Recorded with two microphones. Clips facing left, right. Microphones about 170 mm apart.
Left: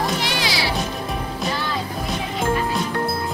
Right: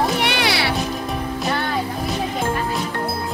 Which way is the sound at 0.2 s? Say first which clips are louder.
Right 3 dB; 60° right (ahead or behind).